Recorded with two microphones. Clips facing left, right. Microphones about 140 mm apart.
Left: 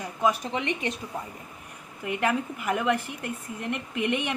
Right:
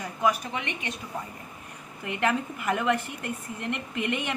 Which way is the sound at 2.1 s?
10° left (ahead or behind).